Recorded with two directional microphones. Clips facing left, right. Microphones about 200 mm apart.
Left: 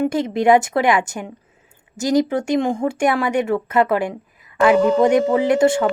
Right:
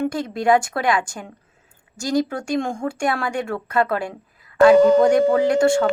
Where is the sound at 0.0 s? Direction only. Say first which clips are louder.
Left 4 dB; 20° left (ahead or behind).